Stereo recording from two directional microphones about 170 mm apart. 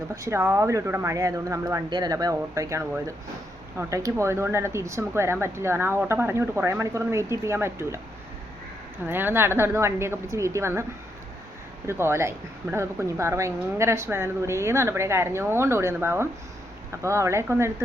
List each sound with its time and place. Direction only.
0.1 s speech: 15° right (ahead or behind)
9.0 s speech: 10° right (ahead or behind)
11.9 s speech: 15° right (ahead or behind)